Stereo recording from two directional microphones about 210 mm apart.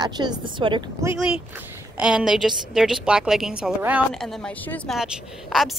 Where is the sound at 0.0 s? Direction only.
20° right (ahead or behind).